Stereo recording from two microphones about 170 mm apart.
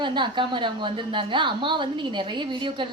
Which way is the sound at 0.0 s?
25° right (ahead or behind).